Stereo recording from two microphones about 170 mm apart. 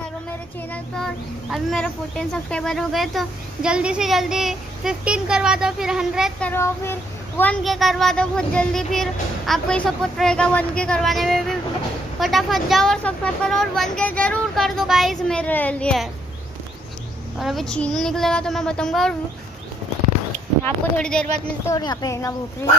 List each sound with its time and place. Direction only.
0.9 s speech: centre (ahead or behind)
6.4 s speech: 15° left (ahead or behind)
7.6 s speech: centre (ahead or behind)
17.4 s speech: centre (ahead or behind)
20.6 s speech: 5° left (ahead or behind)
21.6 s speech: 20° left (ahead or behind)